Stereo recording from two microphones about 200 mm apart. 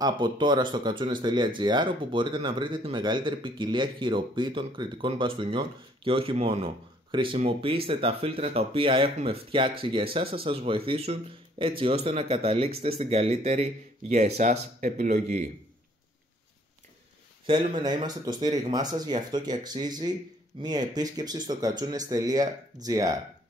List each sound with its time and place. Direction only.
0.0 s speech: 20° right (ahead or behind)
17.5 s speech: 20° right (ahead or behind)